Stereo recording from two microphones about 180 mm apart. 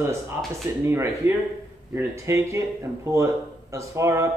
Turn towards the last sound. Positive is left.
turn(degrees=-15)  # may be behind; listen again after turning